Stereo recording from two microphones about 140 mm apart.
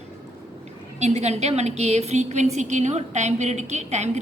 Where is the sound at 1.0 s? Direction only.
55° right (ahead or behind).